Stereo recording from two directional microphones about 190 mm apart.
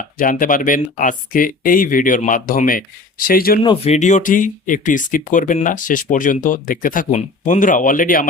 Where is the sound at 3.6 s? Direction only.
35° left (ahead or behind).